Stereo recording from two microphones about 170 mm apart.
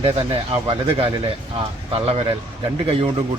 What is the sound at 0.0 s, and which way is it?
Speech, 35° right (ahead or behind).